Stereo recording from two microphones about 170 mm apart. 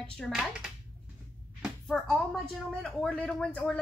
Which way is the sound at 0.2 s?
Centre (ahead or behind).